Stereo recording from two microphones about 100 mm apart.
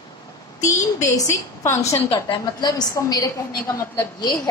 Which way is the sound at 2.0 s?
55° left (ahead or behind).